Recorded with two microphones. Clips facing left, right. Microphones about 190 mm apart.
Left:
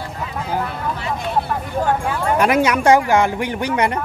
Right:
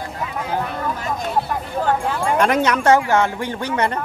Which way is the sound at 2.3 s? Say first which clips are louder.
Left 2 dB; 10° left (ahead or behind).